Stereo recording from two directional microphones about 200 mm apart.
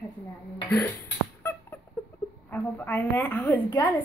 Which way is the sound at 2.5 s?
10° left (ahead or behind).